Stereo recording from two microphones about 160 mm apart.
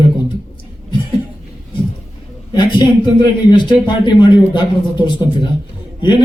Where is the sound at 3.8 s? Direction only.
30° left (ahead or behind).